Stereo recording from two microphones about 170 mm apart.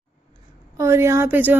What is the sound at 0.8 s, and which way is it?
Speech, 15° right (ahead or behind).